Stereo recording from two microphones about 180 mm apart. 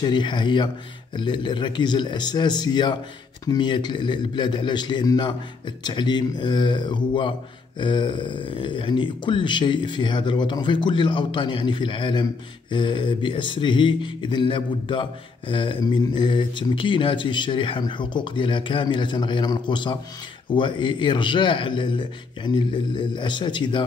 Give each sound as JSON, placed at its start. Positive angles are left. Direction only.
{"t": 0.0, "sound": "speech", "side_deg": 25}